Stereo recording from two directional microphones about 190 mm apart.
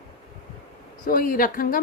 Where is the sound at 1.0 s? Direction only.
45° left (ahead or behind).